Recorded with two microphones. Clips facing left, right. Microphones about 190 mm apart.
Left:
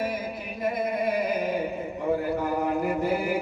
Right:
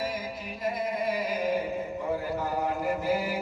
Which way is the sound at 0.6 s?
55° left (ahead or behind).